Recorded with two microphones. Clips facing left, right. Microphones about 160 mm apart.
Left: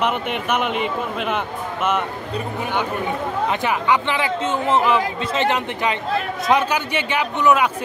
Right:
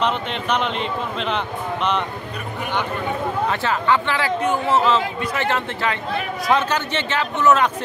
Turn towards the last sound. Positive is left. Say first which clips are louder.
# even
turn(degrees=15)  # may be behind; listen again after turning